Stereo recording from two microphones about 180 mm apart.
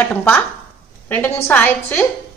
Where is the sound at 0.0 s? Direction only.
10° left (ahead or behind).